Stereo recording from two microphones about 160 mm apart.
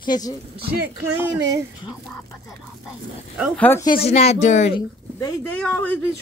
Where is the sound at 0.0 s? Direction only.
25° left (ahead or behind).